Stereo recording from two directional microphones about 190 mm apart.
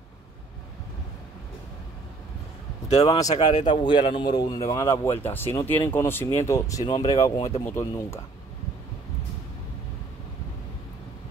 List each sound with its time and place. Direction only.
3.3 s a man's voice: 25° left (ahead or behind)